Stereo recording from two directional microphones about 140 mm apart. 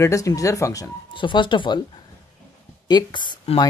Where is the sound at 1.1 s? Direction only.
35° left (ahead or behind).